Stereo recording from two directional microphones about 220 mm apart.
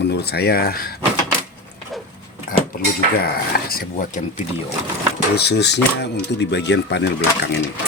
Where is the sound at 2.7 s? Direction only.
40° left (ahead or behind).